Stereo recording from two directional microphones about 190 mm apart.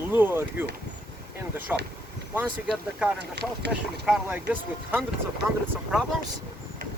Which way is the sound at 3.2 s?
65° right (ahead or behind).